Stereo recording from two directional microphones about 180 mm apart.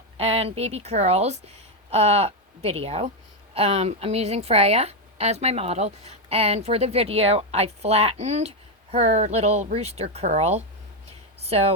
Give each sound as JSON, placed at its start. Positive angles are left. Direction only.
{"t": 0.2, "sound": "a woman's voice", "side_deg": -35}